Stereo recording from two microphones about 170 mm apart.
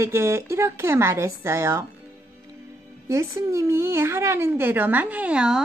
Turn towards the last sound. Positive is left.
turn(degrees=-5)  # may be behind; listen again after turning